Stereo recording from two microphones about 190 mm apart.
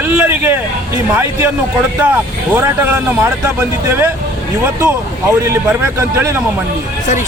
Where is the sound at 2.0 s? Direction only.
10° right (ahead or behind).